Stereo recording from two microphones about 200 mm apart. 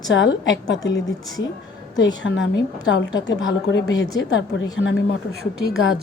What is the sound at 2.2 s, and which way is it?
A woman's voice, 65° left (ahead or behind).